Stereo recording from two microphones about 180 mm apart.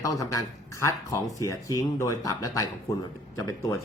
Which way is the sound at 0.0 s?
20° left (ahead or behind).